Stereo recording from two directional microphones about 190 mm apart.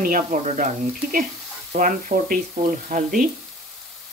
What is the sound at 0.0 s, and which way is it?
Speech, 45° right (ahead or behind).